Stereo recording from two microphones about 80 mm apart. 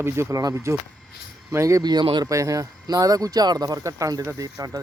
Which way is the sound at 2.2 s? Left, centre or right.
Right.